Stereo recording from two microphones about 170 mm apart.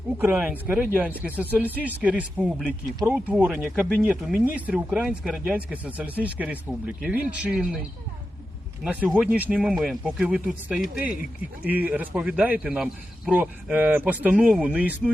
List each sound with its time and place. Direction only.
0.2 s speech: 10° right (ahead or behind)
8.8 s speech: 10° right (ahead or behind)